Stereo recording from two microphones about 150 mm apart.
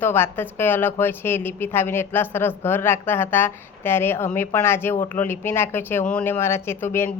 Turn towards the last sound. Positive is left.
turn(degrees=15)  # may be behind; listen again after turning